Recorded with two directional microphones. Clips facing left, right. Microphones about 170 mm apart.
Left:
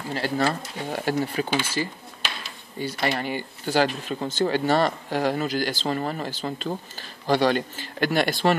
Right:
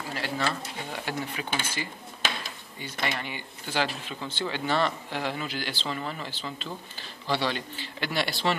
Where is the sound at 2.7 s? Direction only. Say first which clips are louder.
Left 7 dB; 40° left (ahead or behind).